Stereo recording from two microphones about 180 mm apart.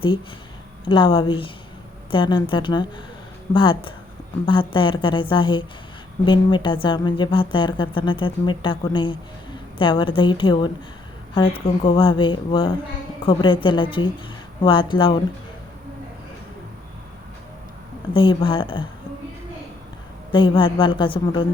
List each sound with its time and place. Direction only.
0.9 s speech: 25° left (ahead or behind)
18.1 s speech: 30° left (ahead or behind)
20.3 s speech: 25° left (ahead or behind)